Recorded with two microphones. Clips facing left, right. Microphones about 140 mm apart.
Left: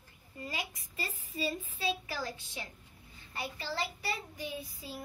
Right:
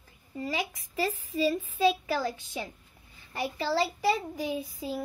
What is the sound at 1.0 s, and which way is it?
Speech, 90° right.